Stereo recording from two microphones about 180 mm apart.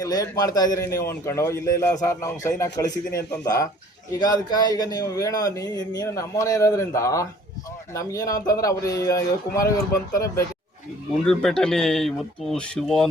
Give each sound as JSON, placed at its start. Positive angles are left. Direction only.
{"t": 0.0, "sound": "a man's voice", "side_deg": 20}
{"t": 11.3, "sound": "speech", "side_deg": 5}